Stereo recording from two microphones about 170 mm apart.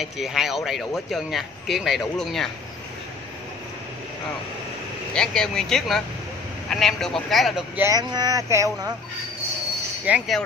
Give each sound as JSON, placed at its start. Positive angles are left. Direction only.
{"t": 0.0, "sound": "speech", "side_deg": 0}
{"t": 5.1, "sound": "speech", "side_deg": 5}
{"t": 7.8, "sound": "speech", "side_deg": -25}
{"t": 10.0, "sound": "speech", "side_deg": -5}